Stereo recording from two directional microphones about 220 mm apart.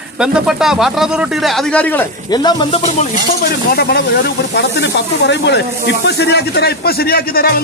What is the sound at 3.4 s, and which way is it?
Speech, 45° left (ahead or behind).